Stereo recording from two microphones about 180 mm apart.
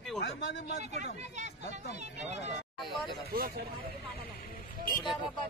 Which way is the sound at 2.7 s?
Centre (ahead or behind).